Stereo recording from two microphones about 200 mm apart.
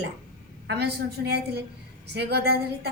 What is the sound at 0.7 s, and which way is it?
A woman's voice, 55° right (ahead or behind).